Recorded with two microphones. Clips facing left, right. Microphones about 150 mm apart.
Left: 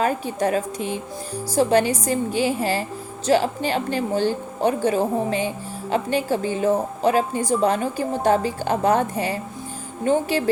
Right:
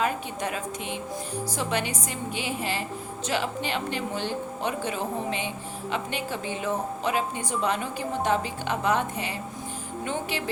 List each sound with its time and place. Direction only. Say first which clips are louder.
0.0 s a woman's voice: left 6 dB; 35° left (ahead or behind)